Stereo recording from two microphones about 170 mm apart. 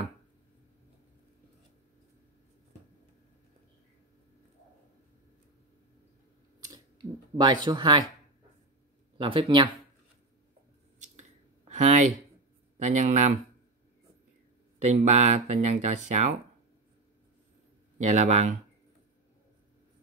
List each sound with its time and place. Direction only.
6.6 s a sound: 25° right (ahead or behind)
7.6 s speech: 25° right (ahead or behind)
9.2 s speech: 30° right (ahead or behind)
11.0 s clicking: 45° right (ahead or behind)
12.7 s speech: 45° right (ahead or behind)
14.8 s speech: 40° right (ahead or behind)
17.9 s speech: 45° right (ahead or behind)